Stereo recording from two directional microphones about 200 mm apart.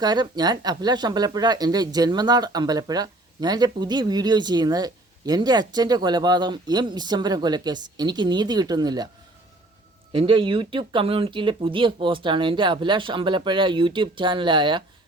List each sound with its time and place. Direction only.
0.0 s speech: 20° right (ahead or behind)
10.1 s speech: 25° right (ahead or behind)